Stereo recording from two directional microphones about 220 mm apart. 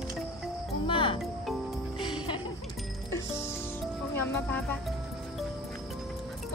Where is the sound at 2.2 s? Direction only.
20° left (ahead or behind).